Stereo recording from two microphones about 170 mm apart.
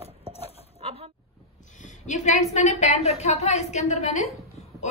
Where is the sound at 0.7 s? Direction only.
35° right (ahead or behind).